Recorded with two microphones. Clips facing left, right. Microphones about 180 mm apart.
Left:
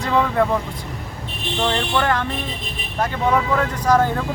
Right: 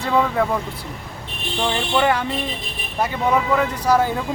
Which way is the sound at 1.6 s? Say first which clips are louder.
Right 1 dB; 10° right (ahead or behind).